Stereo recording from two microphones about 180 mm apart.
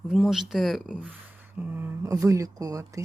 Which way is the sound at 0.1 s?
Centre (ahead or behind).